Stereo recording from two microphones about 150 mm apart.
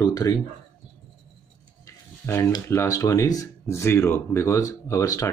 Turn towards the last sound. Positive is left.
turn(degrees=20)  # may be behind; listen again after turning